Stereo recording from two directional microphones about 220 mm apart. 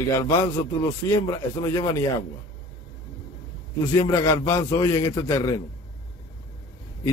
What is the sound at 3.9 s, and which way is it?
A man's voice, 15° left (ahead or behind).